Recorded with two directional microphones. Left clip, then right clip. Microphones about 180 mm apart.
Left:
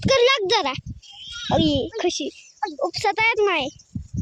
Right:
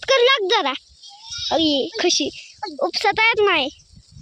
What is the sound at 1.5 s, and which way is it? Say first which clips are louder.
A child's voice: right 2 dB; centre (ahead or behind).